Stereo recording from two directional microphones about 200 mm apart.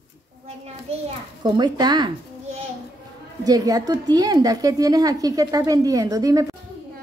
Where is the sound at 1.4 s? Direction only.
20° right (ahead or behind).